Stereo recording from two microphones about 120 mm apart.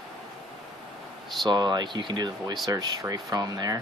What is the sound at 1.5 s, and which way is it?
Speech, 35° right (ahead or behind).